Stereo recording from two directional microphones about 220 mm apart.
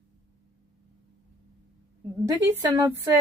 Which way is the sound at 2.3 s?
15° right (ahead or behind).